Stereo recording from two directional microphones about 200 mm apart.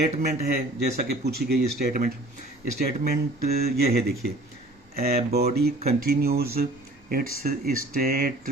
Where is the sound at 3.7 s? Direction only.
50° right (ahead or behind).